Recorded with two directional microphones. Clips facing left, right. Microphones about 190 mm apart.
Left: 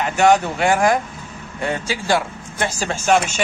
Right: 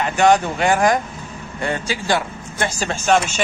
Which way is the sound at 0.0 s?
10° left (ahead or behind).